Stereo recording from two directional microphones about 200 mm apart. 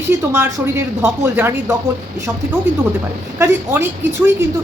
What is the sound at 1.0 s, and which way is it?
Speech, 10° right (ahead or behind).